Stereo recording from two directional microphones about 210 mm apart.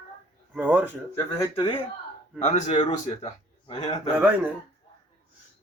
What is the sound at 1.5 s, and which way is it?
Speech, 25° left (ahead or behind).